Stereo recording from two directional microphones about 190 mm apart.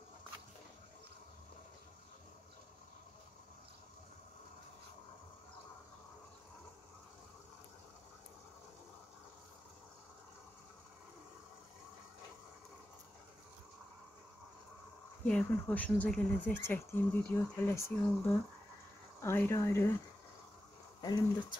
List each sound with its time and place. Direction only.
15.2 s speech: 5° left (ahead or behind)
21.0 s speech: 20° left (ahead or behind)